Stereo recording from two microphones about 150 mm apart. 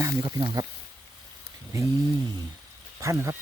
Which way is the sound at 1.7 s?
20° right (ahead or behind).